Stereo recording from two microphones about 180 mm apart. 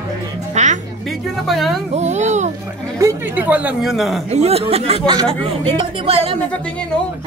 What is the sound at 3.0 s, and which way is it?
Speech, 15° right (ahead or behind).